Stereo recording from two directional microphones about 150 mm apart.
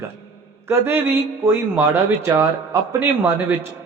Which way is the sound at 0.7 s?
15° right (ahead or behind).